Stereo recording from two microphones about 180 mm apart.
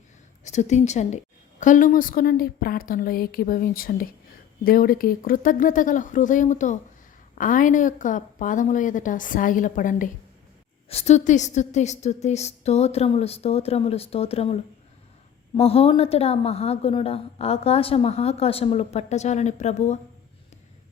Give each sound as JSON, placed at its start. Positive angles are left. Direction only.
{"t": 0.4, "sound": "a woman's voice", "side_deg": 40}
{"t": 10.8, "sound": "a woman's voice", "side_deg": 35}